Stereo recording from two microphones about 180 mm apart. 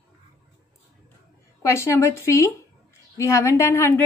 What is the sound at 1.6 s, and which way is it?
A woman's voice, 15° left (ahead or behind).